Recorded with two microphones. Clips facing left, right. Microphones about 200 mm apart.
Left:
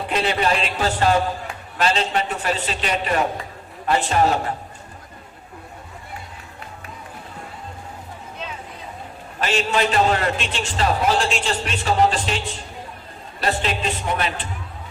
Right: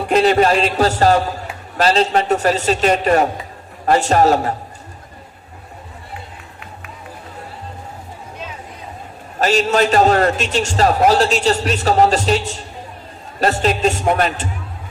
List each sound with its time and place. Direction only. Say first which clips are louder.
0.1 s a man's voice: right 8 dB; 45° right (ahead or behind)
9.4 s a man's voice: right 6 dB; 40° right (ahead or behind)